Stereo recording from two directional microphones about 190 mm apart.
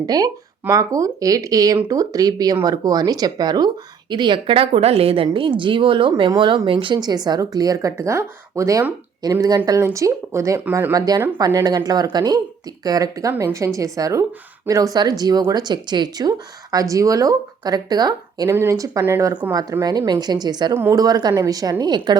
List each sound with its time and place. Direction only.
0.0 s a woman's voice: 20° right (ahead or behind)